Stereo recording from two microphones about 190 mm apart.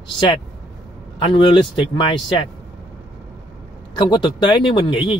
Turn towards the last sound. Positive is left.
turn(degrees=25)  # may be behind; listen again after turning